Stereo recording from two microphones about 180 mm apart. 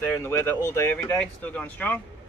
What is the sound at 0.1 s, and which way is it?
Speech, 15° left (ahead or behind).